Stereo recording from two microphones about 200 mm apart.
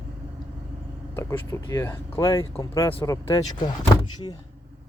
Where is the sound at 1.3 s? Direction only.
20° left (ahead or behind).